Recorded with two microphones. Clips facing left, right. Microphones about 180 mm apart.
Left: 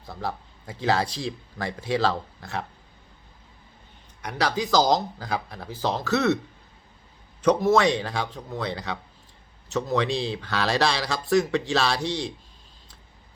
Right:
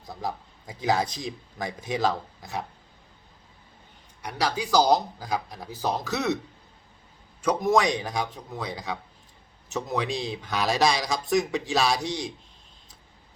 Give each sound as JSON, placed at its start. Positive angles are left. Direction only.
{"t": 0.0, "sound": "speech", "side_deg": -15}
{"t": 4.2, "sound": "speech", "side_deg": -10}
{"t": 7.4, "sound": "speech", "side_deg": -15}